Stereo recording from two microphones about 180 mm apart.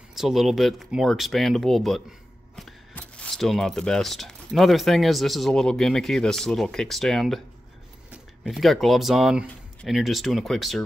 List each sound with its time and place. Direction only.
0.1 s speech: centre (ahead or behind)